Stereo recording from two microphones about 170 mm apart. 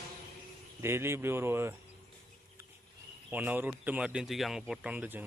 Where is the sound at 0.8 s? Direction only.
15° right (ahead or behind).